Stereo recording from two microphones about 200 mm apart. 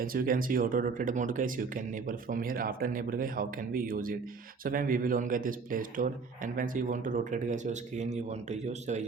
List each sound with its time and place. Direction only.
0.0 s speech: 45° right (ahead or behind)